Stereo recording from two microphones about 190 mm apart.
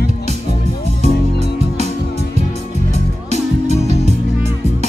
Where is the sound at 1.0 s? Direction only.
35° right (ahead or behind).